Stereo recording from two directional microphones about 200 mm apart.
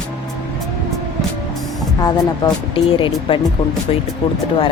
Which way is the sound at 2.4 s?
25° left (ahead or behind).